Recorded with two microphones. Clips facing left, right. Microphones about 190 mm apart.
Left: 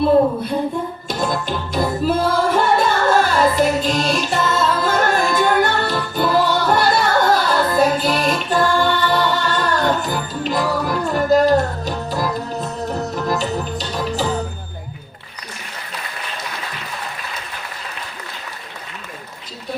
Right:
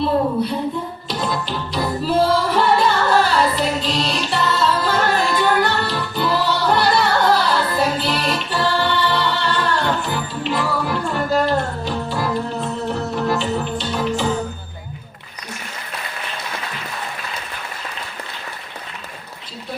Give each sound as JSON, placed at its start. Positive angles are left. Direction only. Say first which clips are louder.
{"t": 1.0, "sound": "music", "louder": "left 1 dB", "side_deg": 45}
{"t": 13.2, "sound": "music", "louder": "right 2 dB", "side_deg": 40}